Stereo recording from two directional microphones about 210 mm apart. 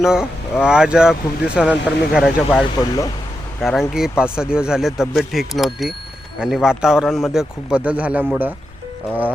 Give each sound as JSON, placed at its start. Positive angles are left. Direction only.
{"t": 0.0, "sound": "speech", "side_deg": 0}
{"t": 2.7, "sound": "speech", "side_deg": 20}
{"t": 3.6, "sound": "speech", "side_deg": 0}